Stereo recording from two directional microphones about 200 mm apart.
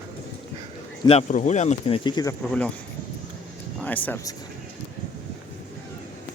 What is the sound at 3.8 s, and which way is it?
Speech, 10° left (ahead or behind).